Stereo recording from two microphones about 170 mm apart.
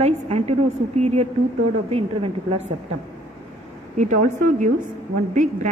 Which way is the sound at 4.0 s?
45° right (ahead or behind).